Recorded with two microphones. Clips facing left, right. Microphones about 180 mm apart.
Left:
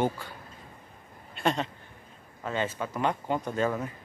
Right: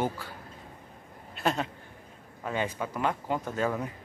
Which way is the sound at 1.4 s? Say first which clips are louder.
Left 1 dB; 5° right (ahead or behind).